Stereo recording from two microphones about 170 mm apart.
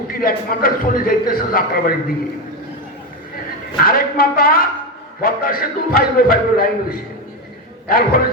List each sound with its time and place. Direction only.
0.1 s a man's voice: 60° left (ahead or behind)
3.8 s a man's voice: 60° left (ahead or behind)